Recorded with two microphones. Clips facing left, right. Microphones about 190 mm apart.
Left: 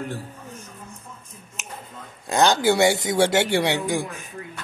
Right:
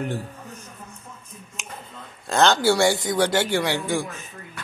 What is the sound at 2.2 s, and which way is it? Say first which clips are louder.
Speech: even; 15° left (ahead or behind).